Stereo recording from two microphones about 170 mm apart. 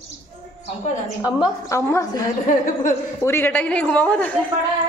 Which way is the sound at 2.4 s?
50° left (ahead or behind).